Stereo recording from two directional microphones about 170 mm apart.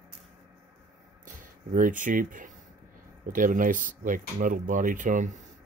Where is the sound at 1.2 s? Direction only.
50° right (ahead or behind).